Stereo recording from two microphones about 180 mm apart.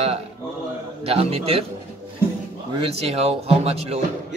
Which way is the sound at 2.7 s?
35° right (ahead or behind).